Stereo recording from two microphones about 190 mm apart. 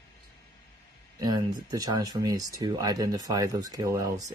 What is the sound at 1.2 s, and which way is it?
Speech, 20° right (ahead or behind).